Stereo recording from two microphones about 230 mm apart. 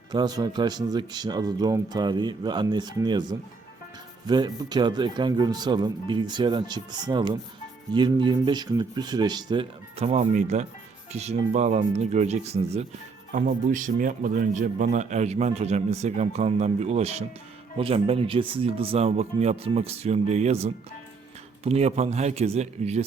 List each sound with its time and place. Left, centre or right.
0.1 s a man's voice: centre